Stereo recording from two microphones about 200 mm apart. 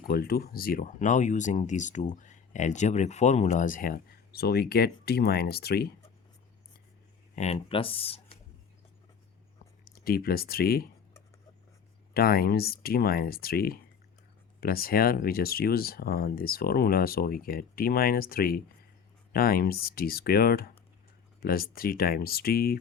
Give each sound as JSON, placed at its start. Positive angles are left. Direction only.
{"t": 0.0, "sound": "speech", "side_deg": 50}
{"t": 7.3, "sound": "speech", "side_deg": 30}
{"t": 9.9, "sound": "speech", "side_deg": 50}
{"t": 12.1, "sound": "speech", "side_deg": 50}